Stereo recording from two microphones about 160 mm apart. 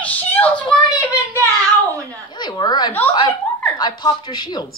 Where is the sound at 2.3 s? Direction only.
25° left (ahead or behind).